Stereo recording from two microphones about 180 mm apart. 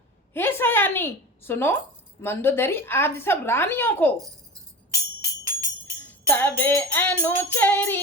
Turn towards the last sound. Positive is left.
turn(degrees=10)  # may be behind; listen again after turning